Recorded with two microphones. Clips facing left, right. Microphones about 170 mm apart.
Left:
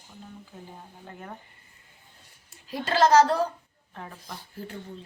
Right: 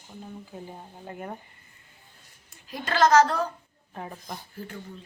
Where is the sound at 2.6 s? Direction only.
30° left (ahead or behind).